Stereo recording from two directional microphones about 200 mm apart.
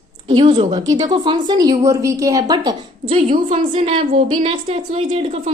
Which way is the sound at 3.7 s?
30° right (ahead or behind).